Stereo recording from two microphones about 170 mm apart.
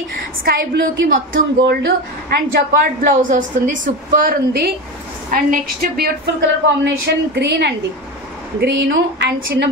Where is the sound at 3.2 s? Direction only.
50° right (ahead or behind); by 7.7 s 80° right.